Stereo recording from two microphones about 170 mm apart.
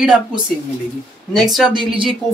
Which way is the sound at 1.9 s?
30° right (ahead or behind).